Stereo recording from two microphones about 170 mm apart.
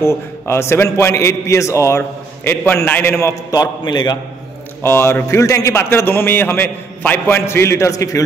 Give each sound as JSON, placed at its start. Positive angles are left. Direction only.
{"t": 0.0, "sound": "a man's voice", "side_deg": 15}
{"t": 4.8, "sound": "a man's voice", "side_deg": 15}